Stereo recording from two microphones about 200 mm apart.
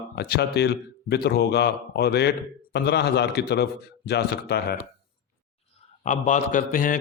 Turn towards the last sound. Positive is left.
turn(degrees=45)  # may be behind; listen again after turning